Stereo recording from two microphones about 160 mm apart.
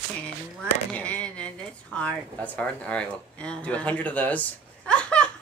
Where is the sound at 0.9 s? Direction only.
10° left (ahead or behind).